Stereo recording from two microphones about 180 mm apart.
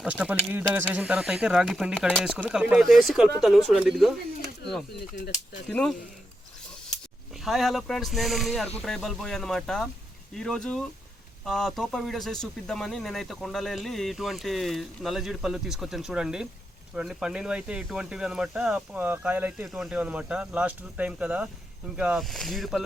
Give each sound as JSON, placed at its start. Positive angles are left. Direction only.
{"t": 0.0, "sound": "speech", "side_deg": -5}
{"t": 5.1, "sound": "speech", "side_deg": 45}
{"t": 5.7, "sound": "speech", "side_deg": 5}
{"t": 7.4, "sound": "speech", "side_deg": 0}